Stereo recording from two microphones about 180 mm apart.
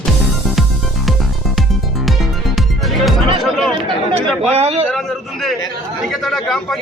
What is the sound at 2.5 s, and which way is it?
Music, centre (ahead or behind).